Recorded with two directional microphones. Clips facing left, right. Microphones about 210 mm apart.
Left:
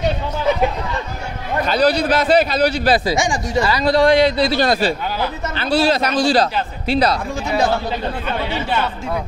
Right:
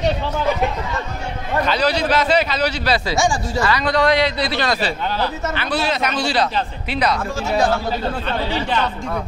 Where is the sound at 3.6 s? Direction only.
30° left (ahead or behind).